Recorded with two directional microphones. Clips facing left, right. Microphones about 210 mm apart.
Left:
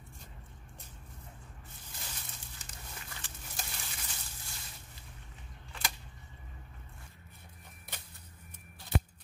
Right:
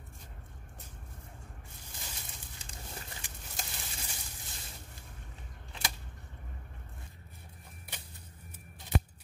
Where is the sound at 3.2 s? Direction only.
15° right (ahead or behind).